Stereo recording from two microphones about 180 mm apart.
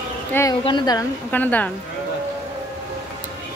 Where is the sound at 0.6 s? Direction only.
25° left (ahead or behind).